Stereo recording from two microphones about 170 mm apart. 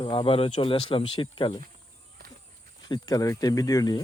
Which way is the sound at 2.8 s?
25° left (ahead or behind).